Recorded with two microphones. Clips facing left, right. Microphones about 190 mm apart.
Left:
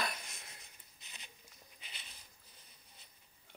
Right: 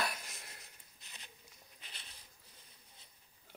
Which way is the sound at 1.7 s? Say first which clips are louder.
Even; 5° left (ahead or behind).